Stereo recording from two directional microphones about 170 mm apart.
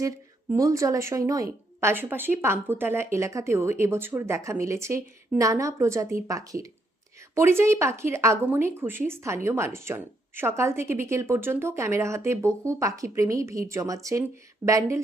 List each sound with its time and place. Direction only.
0.5 s speech: 20° right (ahead or behind)